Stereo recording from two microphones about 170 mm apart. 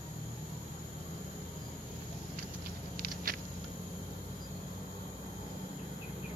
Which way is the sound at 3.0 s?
60° right (ahead or behind).